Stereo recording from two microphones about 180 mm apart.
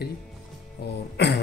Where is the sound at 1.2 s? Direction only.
70° left (ahead or behind).